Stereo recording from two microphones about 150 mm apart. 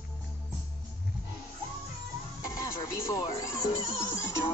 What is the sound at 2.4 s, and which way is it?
Speech, 20° left (ahead or behind).